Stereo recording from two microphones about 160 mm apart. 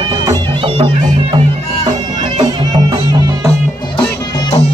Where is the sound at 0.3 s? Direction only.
30° right (ahead or behind).